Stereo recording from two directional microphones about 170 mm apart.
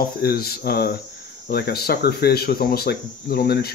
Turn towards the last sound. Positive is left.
turn(degrees=65)  # may be behind; listen again after turning